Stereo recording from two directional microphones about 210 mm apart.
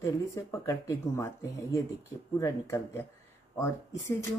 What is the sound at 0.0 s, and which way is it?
Speech, 15° left (ahead or behind).